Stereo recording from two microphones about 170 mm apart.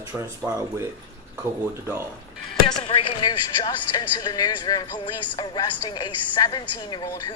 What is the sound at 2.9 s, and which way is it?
Speech, 25° left (ahead or behind).